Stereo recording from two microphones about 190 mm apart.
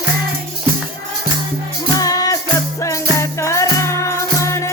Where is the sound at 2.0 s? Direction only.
20° left (ahead or behind).